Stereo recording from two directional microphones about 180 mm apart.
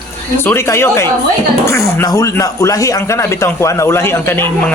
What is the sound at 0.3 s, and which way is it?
Speech, 15° left (ahead or behind).